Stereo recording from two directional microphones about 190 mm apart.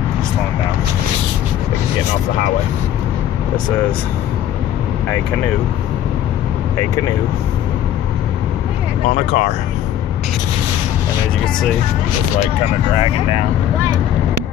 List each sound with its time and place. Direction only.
9.1 s speech: 40° left (ahead or behind)